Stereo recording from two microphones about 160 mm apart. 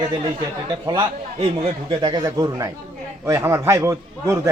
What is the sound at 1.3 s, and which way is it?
Speech, 35° right (ahead or behind).